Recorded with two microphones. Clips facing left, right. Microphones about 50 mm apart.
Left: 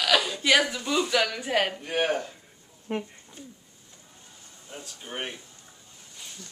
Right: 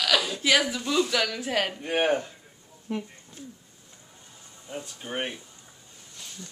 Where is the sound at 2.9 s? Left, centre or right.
Left.